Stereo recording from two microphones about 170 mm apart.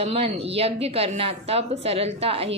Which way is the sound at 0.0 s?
35° right (ahead or behind).